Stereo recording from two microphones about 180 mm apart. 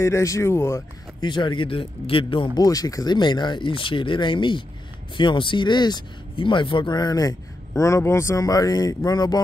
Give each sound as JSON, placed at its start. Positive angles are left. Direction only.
{"t": 0.0, "sound": "speech", "side_deg": 15}